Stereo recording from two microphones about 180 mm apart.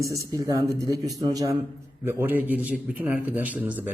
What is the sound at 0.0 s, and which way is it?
A man's voice, 20° right (ahead or behind).